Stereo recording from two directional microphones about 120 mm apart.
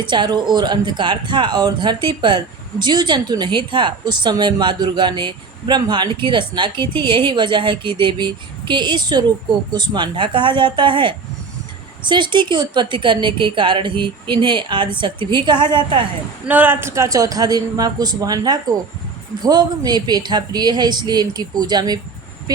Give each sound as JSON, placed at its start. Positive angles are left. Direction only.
{"t": 0.0, "sound": "speech", "side_deg": -40}
{"t": 16.5, "sound": "speech", "side_deg": -15}